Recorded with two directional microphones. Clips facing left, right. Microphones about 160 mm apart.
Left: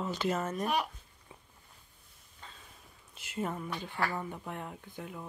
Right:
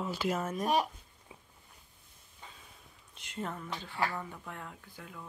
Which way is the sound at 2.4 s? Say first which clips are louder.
Even; 10° right (ahead or behind).